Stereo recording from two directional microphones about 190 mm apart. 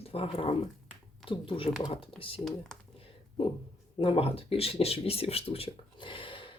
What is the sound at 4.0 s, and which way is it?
Speech, 30° left (ahead or behind).